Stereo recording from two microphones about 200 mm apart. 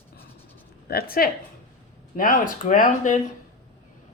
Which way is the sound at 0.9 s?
50° left (ahead or behind).